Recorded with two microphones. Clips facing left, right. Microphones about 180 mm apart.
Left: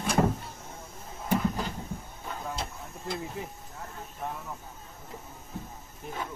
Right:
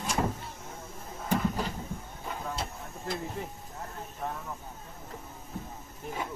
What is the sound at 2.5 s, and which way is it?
Hiss, 5° right (ahead or behind).